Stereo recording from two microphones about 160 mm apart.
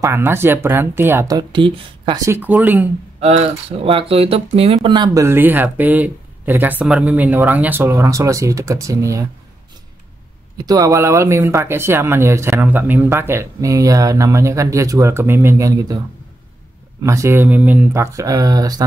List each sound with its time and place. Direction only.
0.0 s speech: 15° right (ahead or behind); by 2.2 s 30° right (ahead or behind)
2.2 s speech: 15° right (ahead or behind)
3.2 s speech: 40° right (ahead or behind); by 9.3 s 20° right (ahead or behind)
10.6 s speech: 20° right (ahead or behind)
17.0 s speech: 20° right (ahead or behind)